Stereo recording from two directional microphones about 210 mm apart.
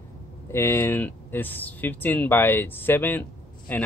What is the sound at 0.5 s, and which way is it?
Speech, 10° left (ahead or behind).